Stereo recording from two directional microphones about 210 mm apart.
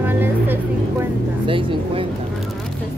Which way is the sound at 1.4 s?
25° right (ahead or behind).